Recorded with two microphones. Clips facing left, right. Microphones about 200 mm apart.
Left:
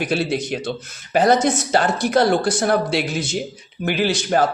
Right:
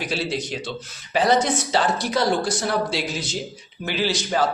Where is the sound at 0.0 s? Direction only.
55° left (ahead or behind).